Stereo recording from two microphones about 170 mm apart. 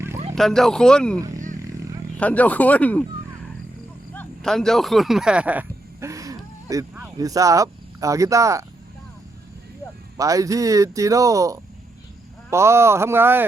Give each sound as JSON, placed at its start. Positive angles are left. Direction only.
{"t": 0.3, "sound": "speech", "side_deg": 0}
{"t": 4.1, "sound": "a sound", "side_deg": 5}
{"t": 7.2, "sound": "speech", "side_deg": -20}
{"t": 10.2, "sound": "speech", "side_deg": -20}